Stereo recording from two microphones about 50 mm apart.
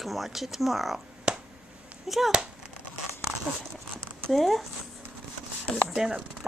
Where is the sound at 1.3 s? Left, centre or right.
Centre.